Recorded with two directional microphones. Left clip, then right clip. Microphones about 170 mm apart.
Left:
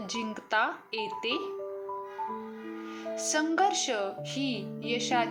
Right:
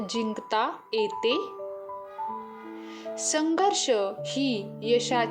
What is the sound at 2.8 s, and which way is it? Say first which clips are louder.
Speech: right 1 dB; 35° right (ahead or behind).